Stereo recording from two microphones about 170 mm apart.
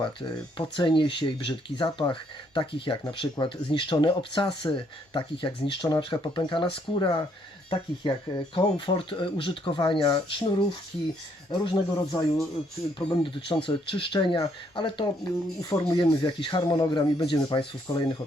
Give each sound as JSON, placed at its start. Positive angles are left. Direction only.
{"t": 0.0, "sound": "speech", "side_deg": 30}